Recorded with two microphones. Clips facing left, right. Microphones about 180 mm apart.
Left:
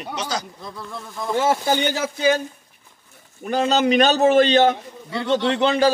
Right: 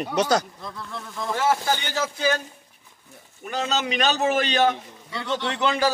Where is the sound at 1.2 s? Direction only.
20° left (ahead or behind).